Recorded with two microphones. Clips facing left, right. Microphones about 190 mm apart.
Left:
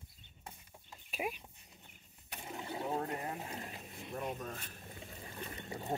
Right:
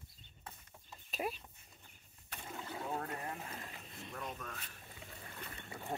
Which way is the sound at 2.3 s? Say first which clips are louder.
Left 2 dB; 15° left (ahead or behind).